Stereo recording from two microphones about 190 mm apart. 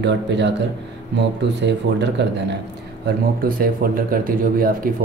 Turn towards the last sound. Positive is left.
turn(degrees=-50)  # may be behind; listen again after turning